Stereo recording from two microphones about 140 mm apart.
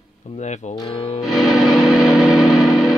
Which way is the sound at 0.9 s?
45° left (ahead or behind).